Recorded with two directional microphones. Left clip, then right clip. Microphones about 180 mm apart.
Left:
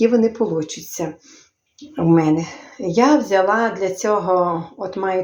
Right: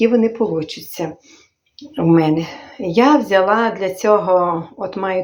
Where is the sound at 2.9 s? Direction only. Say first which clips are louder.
Right 2 dB; 25° right (ahead or behind).